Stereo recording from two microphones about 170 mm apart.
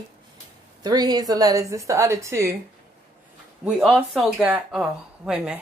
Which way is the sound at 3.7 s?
5° right (ahead or behind).